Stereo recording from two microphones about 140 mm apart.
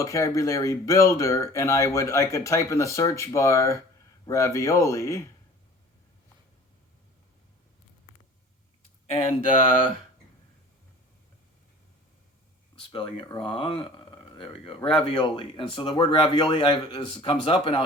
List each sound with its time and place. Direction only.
0.0 s speech: 20° left (ahead or behind)
9.1 s speech: 40° left (ahead or behind)
12.9 s speech: 30° left (ahead or behind)